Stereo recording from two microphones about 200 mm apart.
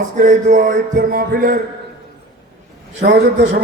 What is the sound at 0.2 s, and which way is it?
A man's voice, 40° right (ahead or behind).